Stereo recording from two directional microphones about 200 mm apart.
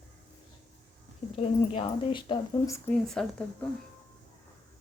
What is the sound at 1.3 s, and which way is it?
Speech, 30° left (ahead or behind).